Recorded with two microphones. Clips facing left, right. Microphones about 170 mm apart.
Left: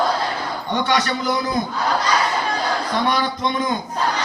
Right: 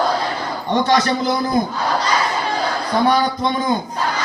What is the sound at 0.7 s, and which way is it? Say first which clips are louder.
Speech: right 4 dB; 40° right (ahead or behind).